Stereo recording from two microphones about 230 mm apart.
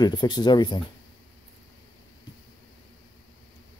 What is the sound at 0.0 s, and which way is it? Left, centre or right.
Speech, centre.